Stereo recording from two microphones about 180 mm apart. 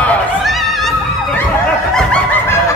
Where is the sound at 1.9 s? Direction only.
5° left (ahead or behind).